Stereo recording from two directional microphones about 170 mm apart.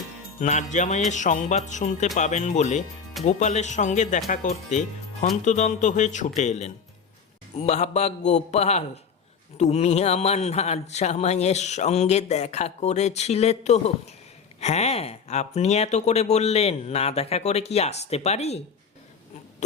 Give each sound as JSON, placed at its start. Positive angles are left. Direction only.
{"t": 0.3, "sound": "jingle bell", "side_deg": 45}
{"t": 7.5, "sound": "speech", "side_deg": 40}